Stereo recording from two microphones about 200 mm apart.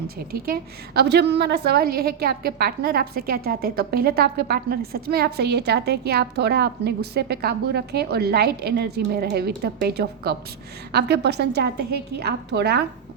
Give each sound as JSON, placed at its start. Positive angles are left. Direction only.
{"t": 0.3, "sound": "a woman's voice", "side_deg": -50}